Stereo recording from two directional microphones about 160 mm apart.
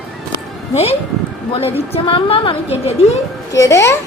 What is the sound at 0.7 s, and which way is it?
A woman's voice, 40° left (ahead or behind).